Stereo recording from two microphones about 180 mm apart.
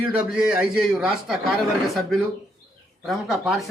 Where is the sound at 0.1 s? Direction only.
5° right (ahead or behind).